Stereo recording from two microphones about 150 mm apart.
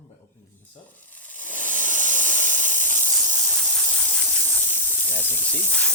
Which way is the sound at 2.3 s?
10° left (ahead or behind).